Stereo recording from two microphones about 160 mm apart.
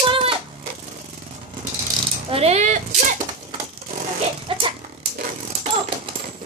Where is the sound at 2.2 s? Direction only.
40° right (ahead or behind).